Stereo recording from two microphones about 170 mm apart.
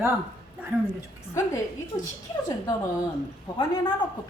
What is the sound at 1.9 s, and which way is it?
Speech, 20° left (ahead or behind).